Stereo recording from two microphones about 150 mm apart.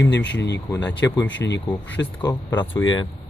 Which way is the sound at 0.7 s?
20° left (ahead or behind).